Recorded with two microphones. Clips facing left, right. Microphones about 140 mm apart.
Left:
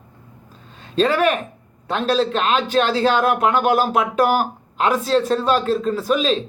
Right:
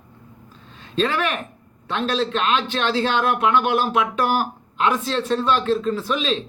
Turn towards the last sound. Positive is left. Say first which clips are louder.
# left 4 dB
turn(degrees=40)  # may be behind; listen again after turning